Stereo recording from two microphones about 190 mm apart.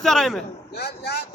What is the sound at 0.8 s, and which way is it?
Speech, 60° left (ahead or behind).